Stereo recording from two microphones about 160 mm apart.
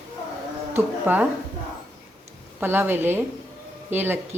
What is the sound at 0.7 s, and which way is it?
Speech, 10° right (ahead or behind).